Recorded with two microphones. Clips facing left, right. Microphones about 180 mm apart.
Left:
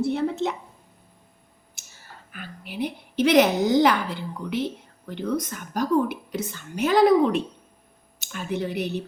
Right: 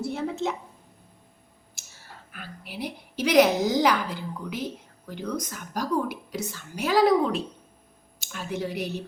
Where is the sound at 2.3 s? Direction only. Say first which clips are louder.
Left 3 dB; centre (ahead or behind).